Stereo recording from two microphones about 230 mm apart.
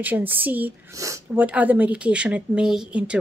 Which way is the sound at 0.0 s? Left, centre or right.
Centre.